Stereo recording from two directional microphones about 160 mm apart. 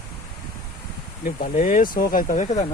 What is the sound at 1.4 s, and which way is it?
Speech, 55° left (ahead or behind).